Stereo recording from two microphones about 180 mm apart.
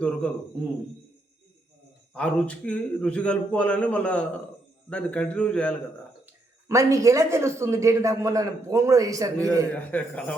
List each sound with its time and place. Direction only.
2.1 s a man's voice: 5° left (ahead or behind)
6.2 s speech: 15° right (ahead or behind)
9.7 s a man's voice: 10° left (ahead or behind)